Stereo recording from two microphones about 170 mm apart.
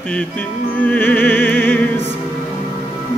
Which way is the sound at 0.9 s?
10° left (ahead or behind).